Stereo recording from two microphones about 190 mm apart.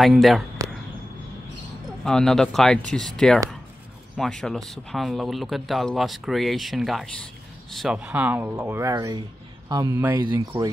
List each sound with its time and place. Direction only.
0.0 s speech: centre (ahead or behind)
0.6 s arrow: 15° right (ahead or behind)
2.0 s speech: 5° left (ahead or behind); by 10.7 s 20° right (ahead or behind)